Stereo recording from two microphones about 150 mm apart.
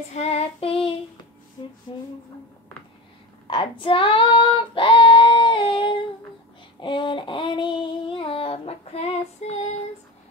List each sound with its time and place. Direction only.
0.1 s child singing: 45° left (ahead or behind)
3.4 s child singing: 35° left (ahead or behind)